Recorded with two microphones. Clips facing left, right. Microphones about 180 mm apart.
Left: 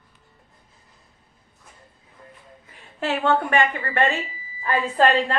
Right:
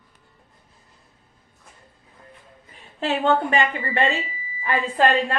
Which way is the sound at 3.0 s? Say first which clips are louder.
Right 1 dB; 20° right (ahead or behind).